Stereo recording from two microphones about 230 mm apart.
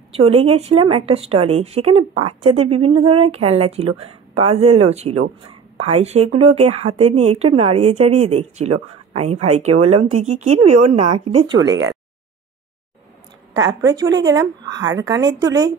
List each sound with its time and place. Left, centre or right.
0.1 s speech: right
10.5 s a woman's voice: right
10.9 s speech: right
11.6 s a woman's voice: centre
13.6 s a woman's voice: centre